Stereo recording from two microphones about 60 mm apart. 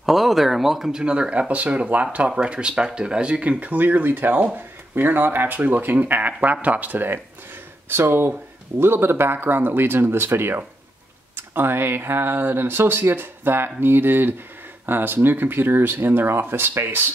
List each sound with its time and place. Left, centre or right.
0.0 s speech: centre; by 17.1 s right